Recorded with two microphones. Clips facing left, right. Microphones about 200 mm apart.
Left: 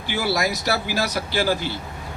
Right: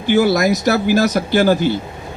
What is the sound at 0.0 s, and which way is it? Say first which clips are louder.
Speech: right 10 dB; 50° right (ahead or behind).